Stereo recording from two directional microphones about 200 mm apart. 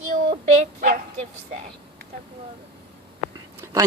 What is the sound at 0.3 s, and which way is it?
Dog, 30° right (ahead or behind).